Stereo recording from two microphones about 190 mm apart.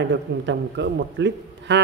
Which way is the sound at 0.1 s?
70° right (ahead or behind).